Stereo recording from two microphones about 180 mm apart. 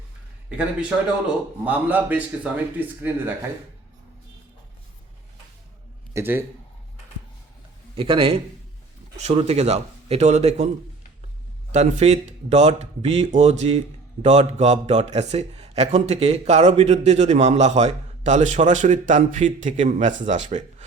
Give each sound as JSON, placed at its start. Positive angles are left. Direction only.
{"t": 1.6, "sound": "speech", "side_deg": -10}
{"t": 6.1, "sound": "speech", "side_deg": -10}
{"t": 7.9, "sound": "speech", "side_deg": -30}
{"t": 11.7, "sound": "speech", "side_deg": -40}